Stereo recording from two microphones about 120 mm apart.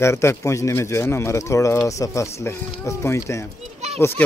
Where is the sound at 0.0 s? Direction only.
20° left (ahead or behind).